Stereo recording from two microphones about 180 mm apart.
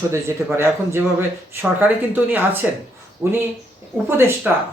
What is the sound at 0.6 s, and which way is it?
Speech, 15° right (ahead or behind).